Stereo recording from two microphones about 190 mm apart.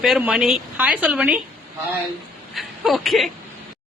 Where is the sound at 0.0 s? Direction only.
5° right (ahead or behind).